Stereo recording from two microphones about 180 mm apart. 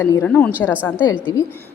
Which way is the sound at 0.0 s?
15° left (ahead or behind).